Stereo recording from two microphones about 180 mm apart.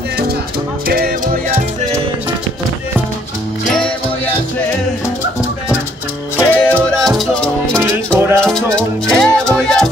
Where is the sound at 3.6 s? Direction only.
5° left (ahead or behind).